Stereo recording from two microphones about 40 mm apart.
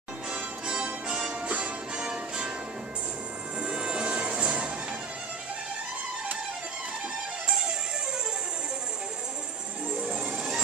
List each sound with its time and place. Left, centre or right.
0.3 s music: right
3.6 s music: right
9.8 s music: right